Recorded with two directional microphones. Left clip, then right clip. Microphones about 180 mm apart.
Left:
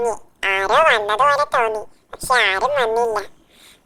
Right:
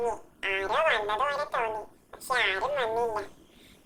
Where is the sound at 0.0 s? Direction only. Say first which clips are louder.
Left 10 dB; 55° left (ahead or behind).